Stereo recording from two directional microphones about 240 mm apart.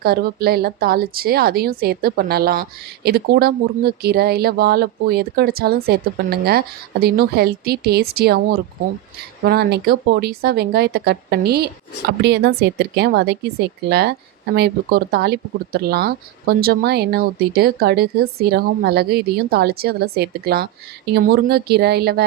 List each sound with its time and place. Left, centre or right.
0.0 s speech: right
9.4 s speech: right